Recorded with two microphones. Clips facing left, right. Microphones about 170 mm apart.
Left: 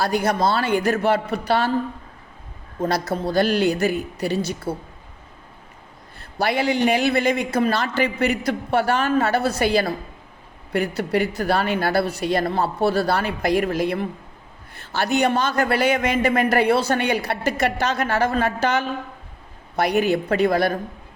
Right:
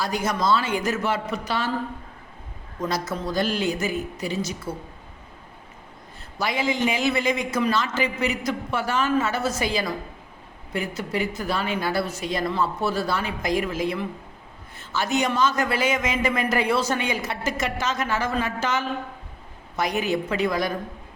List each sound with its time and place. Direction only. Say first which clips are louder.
0.0 s a man's voice: left 4 dB; 60° left (ahead or behind)
2.8 s a man's voice: left 4 dB; 60° left (ahead or behind)
6.1 s a man's voice: left 5 dB; 65° left (ahead or behind)